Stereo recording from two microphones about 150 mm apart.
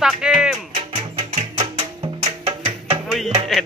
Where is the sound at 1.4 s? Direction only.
45° right (ahead or behind).